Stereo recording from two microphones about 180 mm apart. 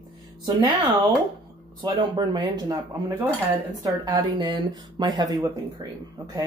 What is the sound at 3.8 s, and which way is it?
Speech, 20° right (ahead or behind).